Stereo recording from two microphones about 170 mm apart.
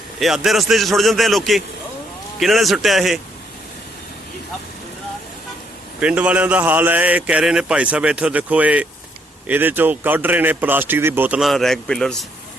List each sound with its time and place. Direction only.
0.2 s a man's voice: centre (ahead or behind)
6.0 s a man's voice: 5° right (ahead or behind)